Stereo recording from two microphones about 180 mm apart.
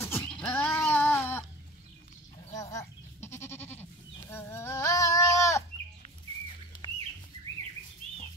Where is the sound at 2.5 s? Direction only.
20° left (ahead or behind).